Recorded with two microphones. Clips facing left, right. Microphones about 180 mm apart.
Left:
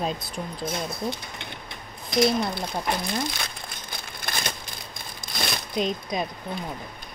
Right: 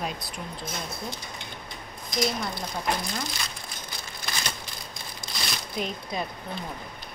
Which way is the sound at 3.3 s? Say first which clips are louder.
Left 2 dB; 60° left (ahead or behind).